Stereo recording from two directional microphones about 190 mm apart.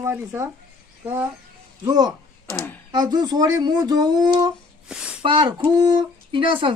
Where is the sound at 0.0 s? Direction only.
15° right (ahead or behind).